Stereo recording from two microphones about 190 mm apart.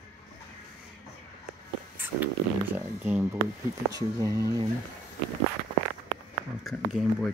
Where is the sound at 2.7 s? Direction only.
10° right (ahead or behind).